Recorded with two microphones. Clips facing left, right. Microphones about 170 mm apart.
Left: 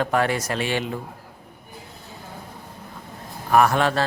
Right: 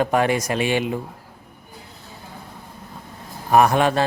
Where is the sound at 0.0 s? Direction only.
15° right (ahead or behind).